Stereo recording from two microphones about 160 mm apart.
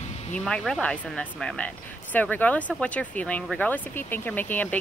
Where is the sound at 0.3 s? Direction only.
5° left (ahead or behind).